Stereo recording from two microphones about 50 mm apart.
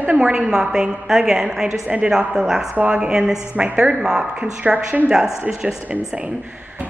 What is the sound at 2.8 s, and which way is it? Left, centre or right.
Speech, right.